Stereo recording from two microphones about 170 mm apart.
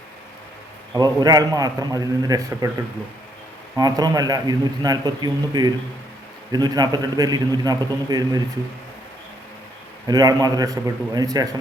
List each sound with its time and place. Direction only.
0.9 s a man's voice: 20° right (ahead or behind)
3.8 s a man's voice: 25° right (ahead or behind)
10.1 s a man's voice: 25° right (ahead or behind)